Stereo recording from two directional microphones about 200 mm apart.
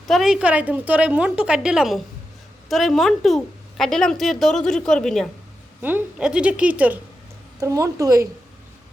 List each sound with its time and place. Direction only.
0.1 s a woman's voice: centre (ahead or behind)
5.8 s a woman's voice: 10° right (ahead or behind)